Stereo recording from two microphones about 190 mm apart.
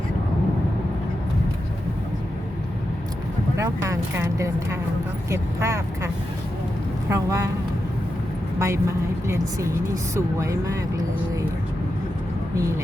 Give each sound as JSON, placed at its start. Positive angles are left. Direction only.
{"t": 3.6, "sound": "speech", "side_deg": -15}
{"t": 7.1, "sound": "speech", "side_deg": -15}
{"t": 8.5, "sound": "speech", "side_deg": -15}
{"t": 12.5, "sound": "speech", "side_deg": -15}